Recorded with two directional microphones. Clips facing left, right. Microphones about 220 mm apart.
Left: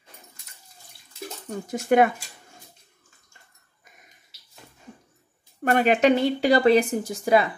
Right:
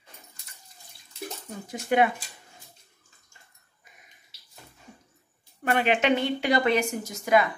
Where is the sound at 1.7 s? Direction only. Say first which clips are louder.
Left 4 dB; 45° left (ahead or behind).